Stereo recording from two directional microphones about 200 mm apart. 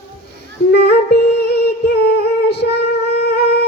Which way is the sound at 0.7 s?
55° left (ahead or behind).